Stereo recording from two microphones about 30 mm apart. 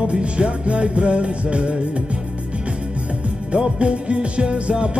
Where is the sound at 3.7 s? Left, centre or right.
Right.